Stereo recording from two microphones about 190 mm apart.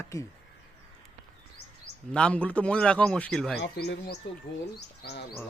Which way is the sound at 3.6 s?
60° left (ahead or behind).